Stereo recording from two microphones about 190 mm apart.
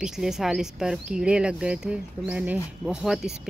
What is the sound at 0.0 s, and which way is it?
Speech, centre (ahead or behind).